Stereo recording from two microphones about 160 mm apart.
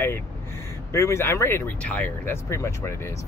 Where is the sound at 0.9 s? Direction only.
15° left (ahead or behind).